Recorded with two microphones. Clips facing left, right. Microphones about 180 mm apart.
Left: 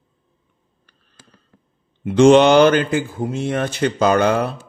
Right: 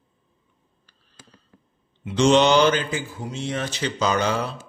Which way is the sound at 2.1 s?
55° left (ahead or behind).